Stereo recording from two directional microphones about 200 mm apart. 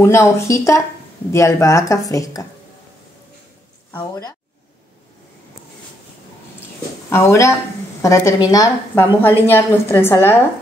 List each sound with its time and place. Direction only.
0.0 s a woman's voice: 15° left (ahead or behind)
3.9 s speech: 20° left (ahead or behind)
7.1 s a woman's voice: 15° left (ahead or behind)